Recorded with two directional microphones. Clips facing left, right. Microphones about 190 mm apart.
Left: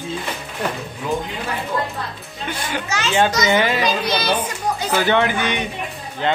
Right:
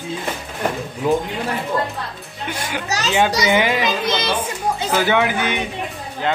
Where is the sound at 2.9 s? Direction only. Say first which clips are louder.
Right 3 dB; 40° right (ahead or behind).